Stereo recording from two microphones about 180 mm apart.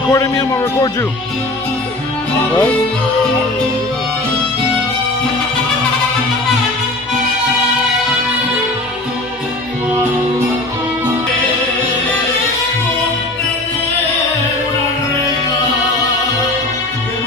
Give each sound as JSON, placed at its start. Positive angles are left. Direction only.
{"t": 0.1, "sound": "speech", "side_deg": 20}